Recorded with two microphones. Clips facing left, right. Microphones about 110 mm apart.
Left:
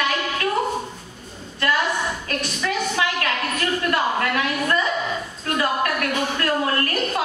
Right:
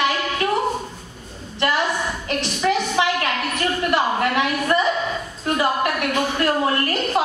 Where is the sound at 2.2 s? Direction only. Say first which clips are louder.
Right 5 dB; 20° right (ahead or behind).